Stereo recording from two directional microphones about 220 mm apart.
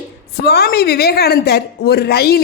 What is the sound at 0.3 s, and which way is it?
A woman's voice, 45° left (ahead or behind).